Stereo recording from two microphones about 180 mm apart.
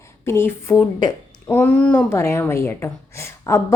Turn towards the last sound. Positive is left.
turn(degrees=15)  # may be behind; listen again after turning